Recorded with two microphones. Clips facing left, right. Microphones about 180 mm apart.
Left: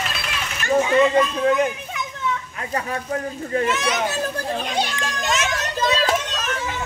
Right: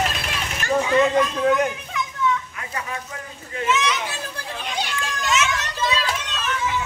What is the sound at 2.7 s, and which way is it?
Children playing, 40° left (ahead or behind).